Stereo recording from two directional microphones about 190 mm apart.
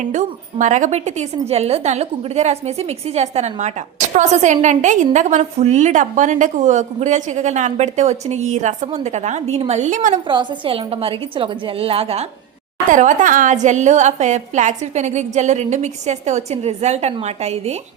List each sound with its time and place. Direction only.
0.0 s a woman's voice: 40° right (ahead or behind)
10.2 s a woman's voice: 25° right (ahead or behind)